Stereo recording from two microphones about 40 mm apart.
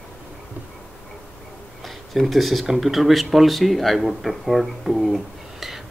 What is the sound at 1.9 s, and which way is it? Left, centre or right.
Speech, centre.